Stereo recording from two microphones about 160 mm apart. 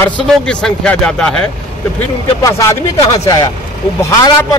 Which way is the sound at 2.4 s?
20° left (ahead or behind).